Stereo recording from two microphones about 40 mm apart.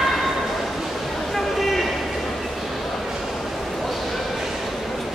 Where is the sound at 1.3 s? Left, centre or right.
Centre.